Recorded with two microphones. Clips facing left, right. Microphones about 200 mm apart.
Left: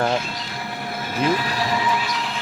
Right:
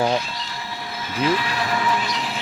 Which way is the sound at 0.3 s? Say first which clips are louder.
Left 2 dB; 55° left (ahead or behind).